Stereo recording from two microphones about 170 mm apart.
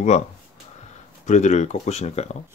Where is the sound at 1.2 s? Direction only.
45° left (ahead or behind).